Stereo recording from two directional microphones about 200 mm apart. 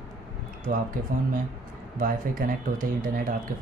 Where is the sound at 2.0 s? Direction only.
45° right (ahead or behind).